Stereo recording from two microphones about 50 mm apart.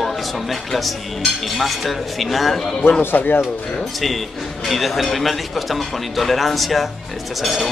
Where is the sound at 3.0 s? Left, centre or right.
Left.